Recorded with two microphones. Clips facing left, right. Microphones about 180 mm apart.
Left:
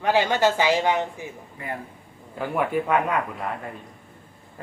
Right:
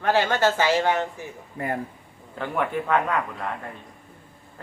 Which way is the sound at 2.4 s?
10° left (ahead or behind).